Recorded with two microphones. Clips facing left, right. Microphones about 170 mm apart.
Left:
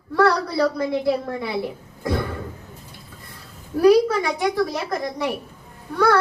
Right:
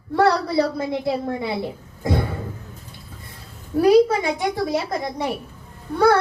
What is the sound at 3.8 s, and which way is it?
A woman's voice, 25° right (ahead or behind).